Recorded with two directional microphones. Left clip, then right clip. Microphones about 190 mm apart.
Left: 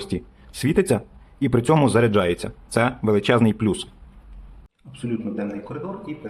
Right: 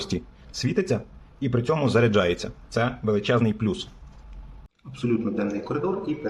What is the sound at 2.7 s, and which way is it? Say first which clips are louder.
Speech: left 4 dB; 30° left (ahead or behind).